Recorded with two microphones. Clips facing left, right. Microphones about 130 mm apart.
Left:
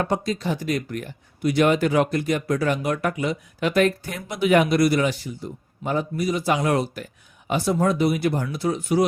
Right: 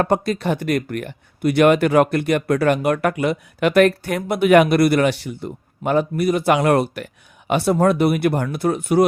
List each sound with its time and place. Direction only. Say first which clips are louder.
0.0 s speech: right 5 dB; 60° right (ahead or behind)